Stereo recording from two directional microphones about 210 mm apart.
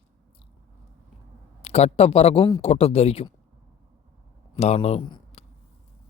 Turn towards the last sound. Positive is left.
turn(degrees=25)  # may be behind; listen again after turning